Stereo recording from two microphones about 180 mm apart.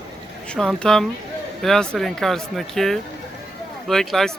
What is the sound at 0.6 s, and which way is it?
Speech, 5° left (ahead or behind).